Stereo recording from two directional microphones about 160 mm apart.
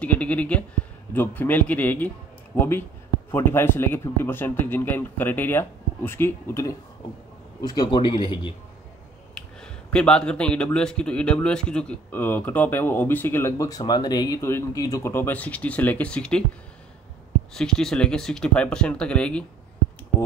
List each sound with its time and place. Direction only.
0.0 s a man's voice: 10° left (ahead or behind); by 8.5 s 30° left (ahead or behind)
9.6 s a man's voice: 5° left (ahead or behind)
17.6 s speech: 5° left (ahead or behind)